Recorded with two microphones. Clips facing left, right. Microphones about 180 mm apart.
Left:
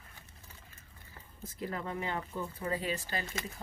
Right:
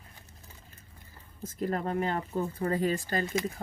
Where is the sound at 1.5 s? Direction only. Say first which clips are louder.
Right 7 dB; 45° right (ahead or behind).